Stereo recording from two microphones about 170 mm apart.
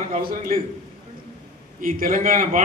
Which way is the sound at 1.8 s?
55° right (ahead or behind).